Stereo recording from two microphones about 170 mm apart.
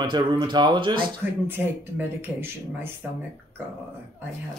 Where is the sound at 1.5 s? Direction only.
10° right (ahead or behind).